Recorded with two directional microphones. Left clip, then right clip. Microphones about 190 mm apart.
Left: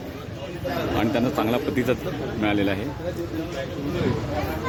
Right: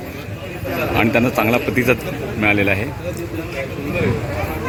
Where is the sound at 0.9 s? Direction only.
5° right (ahead or behind).